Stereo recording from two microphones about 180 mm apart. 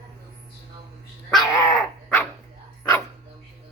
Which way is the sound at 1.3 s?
Centre (ahead or behind).